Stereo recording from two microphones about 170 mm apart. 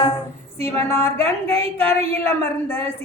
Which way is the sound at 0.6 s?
15° left (ahead or behind).